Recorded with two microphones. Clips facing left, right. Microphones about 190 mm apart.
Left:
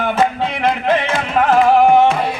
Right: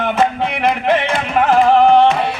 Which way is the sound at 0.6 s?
15° right (ahead or behind).